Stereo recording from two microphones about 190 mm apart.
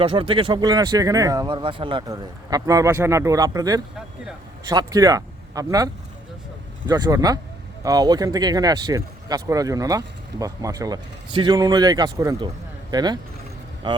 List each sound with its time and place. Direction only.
0.0 s speech: 30° right (ahead or behind)